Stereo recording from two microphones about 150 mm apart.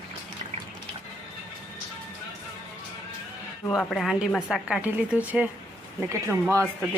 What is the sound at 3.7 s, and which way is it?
Speech, centre (ahead or behind).